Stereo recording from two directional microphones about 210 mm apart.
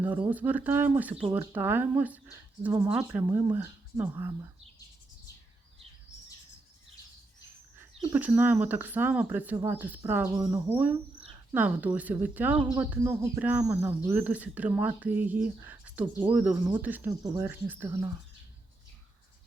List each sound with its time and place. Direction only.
0.0 s speech: 10° right (ahead or behind)
7.9 s speech: 10° right (ahead or behind)